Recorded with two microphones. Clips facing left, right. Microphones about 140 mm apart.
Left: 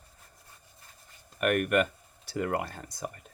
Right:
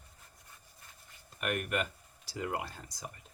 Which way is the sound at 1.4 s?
60° left (ahead or behind).